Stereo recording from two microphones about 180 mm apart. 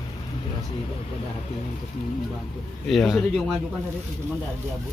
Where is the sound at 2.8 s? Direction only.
5° left (ahead or behind).